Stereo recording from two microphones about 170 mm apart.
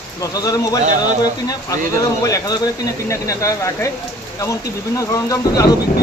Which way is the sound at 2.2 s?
20° left (ahead or behind).